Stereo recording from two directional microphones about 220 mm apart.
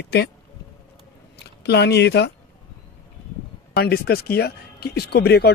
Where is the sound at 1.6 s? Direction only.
50° left (ahead or behind).